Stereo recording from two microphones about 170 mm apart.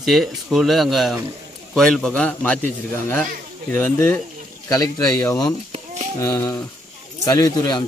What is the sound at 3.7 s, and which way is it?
A man's voice, 10° left (ahead or behind).